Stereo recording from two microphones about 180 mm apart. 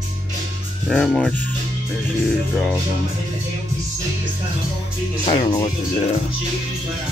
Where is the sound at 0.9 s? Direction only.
Centre (ahead or behind).